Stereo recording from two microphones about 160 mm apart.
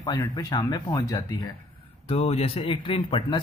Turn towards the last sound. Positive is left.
turn(degrees=35)  # may be behind; listen again after turning